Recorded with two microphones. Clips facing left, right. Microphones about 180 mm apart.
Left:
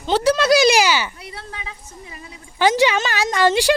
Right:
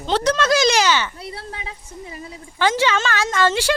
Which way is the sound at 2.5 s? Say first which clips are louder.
Left 3 dB; 15° left (ahead or behind).